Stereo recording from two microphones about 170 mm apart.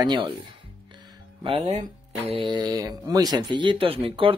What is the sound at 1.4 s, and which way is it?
Speech, 30° right (ahead or behind).